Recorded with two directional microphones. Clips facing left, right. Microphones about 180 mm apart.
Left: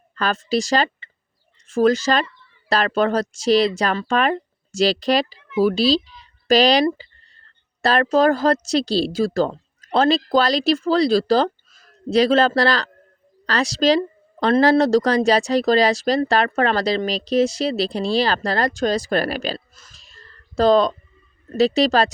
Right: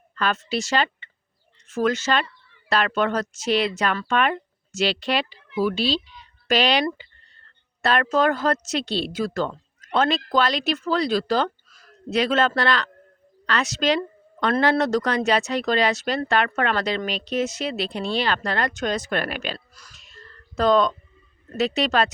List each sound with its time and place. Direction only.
0.2 s speech: 35° left (ahead or behind)